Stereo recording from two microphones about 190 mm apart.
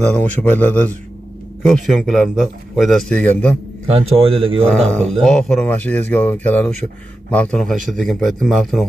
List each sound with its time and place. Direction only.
0.1 s a man's voice: 10° left (ahead or behind)
3.9 s speech: 30° right (ahead or behind)
4.6 s a man's voice: 5° left (ahead or behind)